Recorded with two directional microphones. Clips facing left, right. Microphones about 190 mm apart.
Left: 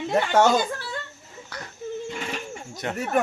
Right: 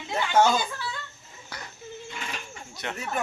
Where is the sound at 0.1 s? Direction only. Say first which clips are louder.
Left 3 dB; 60° left (ahead or behind).